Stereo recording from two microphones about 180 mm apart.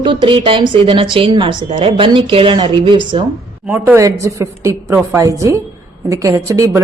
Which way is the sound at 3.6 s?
10° right (ahead or behind).